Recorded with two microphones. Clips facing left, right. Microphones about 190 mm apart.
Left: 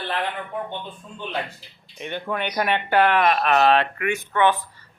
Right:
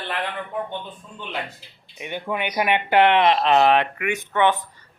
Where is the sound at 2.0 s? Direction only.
10° right (ahead or behind).